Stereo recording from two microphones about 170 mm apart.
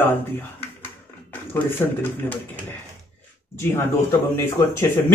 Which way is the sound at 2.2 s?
10° left (ahead or behind).